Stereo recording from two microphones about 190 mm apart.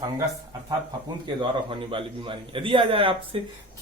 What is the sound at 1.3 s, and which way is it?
A man's voice, 25° right (ahead or behind).